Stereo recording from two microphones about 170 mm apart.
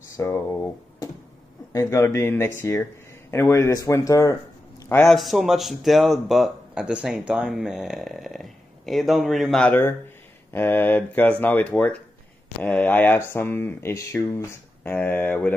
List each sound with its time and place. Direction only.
0.2 s a man's voice: 15° left (ahead or behind)
5.1 s speech: centre (ahead or behind)